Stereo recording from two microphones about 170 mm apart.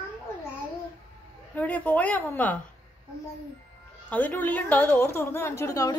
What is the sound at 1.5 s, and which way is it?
A woman's voice, 10° left (ahead or behind).